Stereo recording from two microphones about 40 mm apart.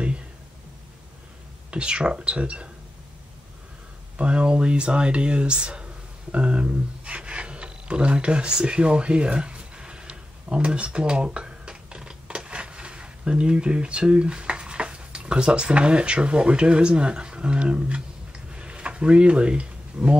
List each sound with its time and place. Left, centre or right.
1.7 s speech: right
4.2 s speech: right
18.5 s a sound: right